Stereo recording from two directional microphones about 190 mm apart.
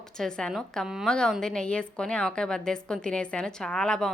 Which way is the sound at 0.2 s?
5° left (ahead or behind).